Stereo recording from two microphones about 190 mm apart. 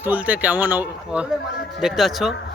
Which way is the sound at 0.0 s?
10° right (ahead or behind).